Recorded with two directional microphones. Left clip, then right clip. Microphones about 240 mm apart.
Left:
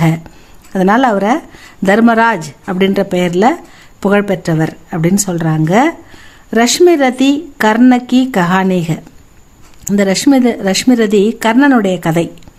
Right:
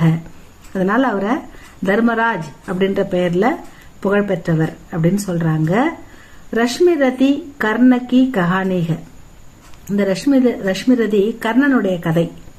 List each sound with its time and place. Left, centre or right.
0.7 s speech: left